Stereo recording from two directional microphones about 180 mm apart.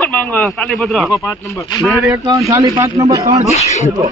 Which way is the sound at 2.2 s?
20° right (ahead or behind).